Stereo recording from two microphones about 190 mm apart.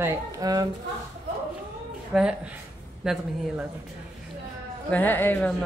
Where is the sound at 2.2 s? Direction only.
5° right (ahead or behind).